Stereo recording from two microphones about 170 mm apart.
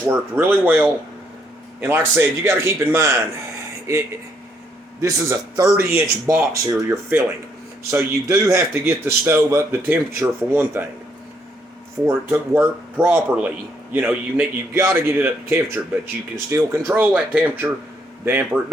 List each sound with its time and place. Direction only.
0.1 s a man's voice: 10° right (ahead or behind)
12.0 s a man's voice: 15° right (ahead or behind)